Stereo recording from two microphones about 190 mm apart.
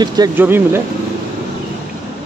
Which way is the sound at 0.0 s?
20° right (ahead or behind).